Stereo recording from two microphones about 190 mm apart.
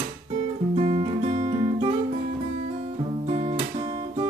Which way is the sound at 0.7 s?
30° right (ahead or behind).